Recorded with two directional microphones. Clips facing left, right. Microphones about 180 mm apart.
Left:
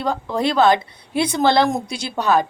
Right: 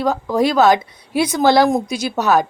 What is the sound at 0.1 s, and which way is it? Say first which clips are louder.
Speech: right 3 dB; 10° right (ahead or behind).